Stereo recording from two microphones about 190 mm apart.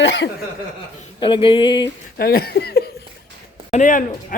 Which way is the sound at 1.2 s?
25° left (ahead or behind).